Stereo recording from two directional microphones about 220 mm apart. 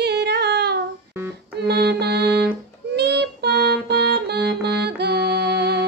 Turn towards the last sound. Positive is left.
turn(degrees=-50)  # may be behind; listen again after turning